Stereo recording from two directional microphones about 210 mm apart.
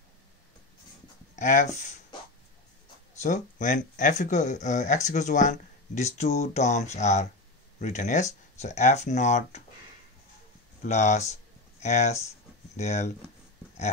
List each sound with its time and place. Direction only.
1.3 s speech: 35° left (ahead or behind)
3.2 s speech: 35° left (ahead or behind)
10.8 s speech: 35° left (ahead or behind)